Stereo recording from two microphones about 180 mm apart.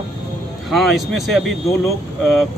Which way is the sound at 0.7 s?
Centre (ahead or behind).